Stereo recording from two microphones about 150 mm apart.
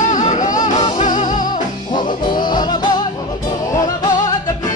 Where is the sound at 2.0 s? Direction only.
30° left (ahead or behind).